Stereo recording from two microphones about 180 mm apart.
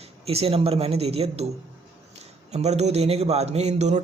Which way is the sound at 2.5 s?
35° right (ahead or behind).